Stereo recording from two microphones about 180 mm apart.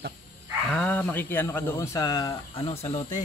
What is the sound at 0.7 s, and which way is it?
Speech, 10° left (ahead or behind).